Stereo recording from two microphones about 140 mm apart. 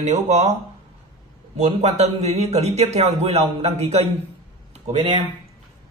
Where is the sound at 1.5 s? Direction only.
50° right (ahead or behind).